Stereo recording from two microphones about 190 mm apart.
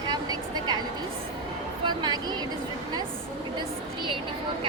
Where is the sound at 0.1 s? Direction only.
20° right (ahead or behind).